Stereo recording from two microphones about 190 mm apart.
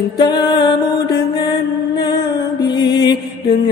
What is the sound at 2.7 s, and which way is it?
Music, 20° left (ahead or behind).